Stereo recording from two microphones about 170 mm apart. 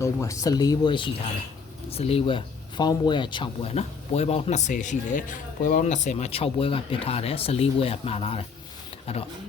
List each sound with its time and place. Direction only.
0.0 s speech: 15° left (ahead or behind); by 9.2 s 35° left (ahead or behind)